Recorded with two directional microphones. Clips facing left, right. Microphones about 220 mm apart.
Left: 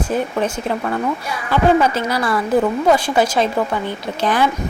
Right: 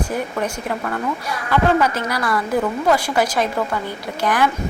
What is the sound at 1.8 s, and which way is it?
A woman's voice, 25° left (ahead or behind).